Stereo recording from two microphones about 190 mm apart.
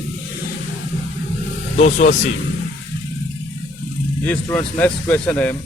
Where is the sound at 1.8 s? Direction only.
40° left (ahead or behind).